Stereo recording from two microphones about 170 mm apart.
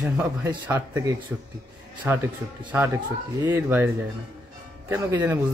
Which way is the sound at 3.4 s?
10° right (ahead or behind).